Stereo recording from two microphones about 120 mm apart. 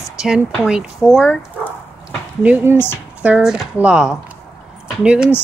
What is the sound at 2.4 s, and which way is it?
Speech, 15° right (ahead or behind).